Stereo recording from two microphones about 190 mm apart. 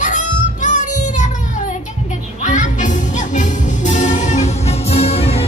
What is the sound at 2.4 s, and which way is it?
Music, 40° left (ahead or behind).